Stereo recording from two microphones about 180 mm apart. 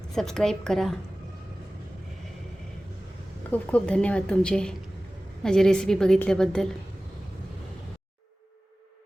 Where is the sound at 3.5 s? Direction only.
5° left (ahead or behind).